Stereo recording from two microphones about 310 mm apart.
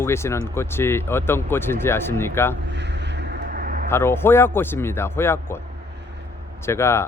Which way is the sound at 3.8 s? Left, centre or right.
Centre.